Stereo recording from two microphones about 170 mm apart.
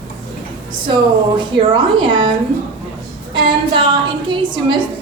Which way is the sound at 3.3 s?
30° right (ahead or behind).